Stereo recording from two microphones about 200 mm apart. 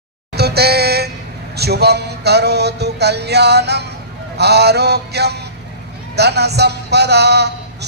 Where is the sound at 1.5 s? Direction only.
55° right (ahead or behind).